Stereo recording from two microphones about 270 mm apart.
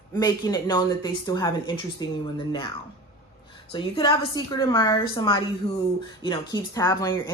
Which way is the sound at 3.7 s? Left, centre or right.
Centre.